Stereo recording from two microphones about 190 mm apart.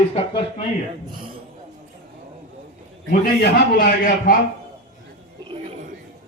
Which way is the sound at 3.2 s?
50° left (ahead or behind).